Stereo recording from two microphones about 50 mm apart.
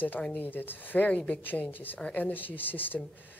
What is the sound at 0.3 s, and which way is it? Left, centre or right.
A woman's voice, left.